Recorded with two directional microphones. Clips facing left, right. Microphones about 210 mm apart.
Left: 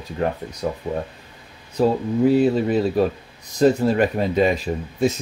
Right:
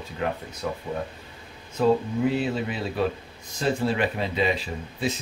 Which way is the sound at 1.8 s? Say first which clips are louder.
Left 4 dB; 35° left (ahead or behind).